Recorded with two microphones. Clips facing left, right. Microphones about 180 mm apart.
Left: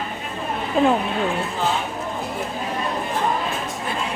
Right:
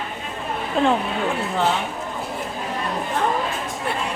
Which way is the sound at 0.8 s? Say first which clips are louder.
Left 2 dB; 5° left (ahead or behind).